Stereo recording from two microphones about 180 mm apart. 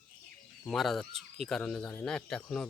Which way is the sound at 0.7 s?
Centre (ahead or behind).